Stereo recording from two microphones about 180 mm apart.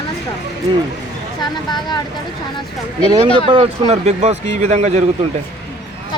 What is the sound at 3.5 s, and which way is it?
Speech, 35° right (ahead or behind).